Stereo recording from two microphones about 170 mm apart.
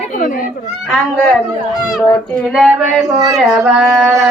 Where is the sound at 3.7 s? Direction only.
Centre (ahead or behind).